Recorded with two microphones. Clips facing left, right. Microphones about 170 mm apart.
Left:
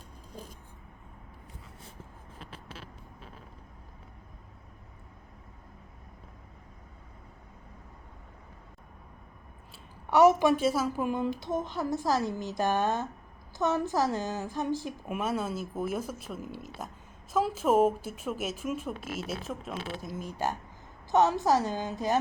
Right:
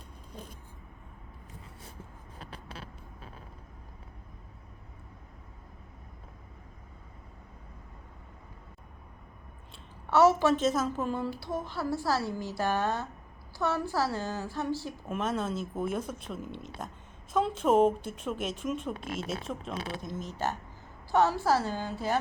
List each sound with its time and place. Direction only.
10.1 s a woman's voice: 15° left (ahead or behind)